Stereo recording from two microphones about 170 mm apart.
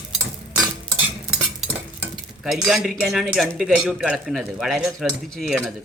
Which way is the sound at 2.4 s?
Centre (ahead or behind).